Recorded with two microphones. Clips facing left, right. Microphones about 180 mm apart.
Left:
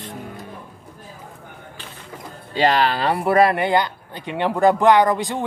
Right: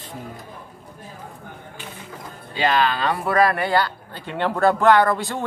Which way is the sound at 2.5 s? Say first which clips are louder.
Left 2 dB; 35° left (ahead or behind).